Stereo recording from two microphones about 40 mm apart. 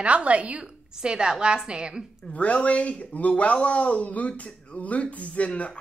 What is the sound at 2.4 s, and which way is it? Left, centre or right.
Speech, left.